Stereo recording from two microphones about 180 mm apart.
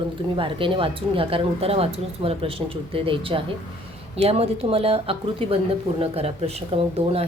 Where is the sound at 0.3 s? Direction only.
30° right (ahead or behind).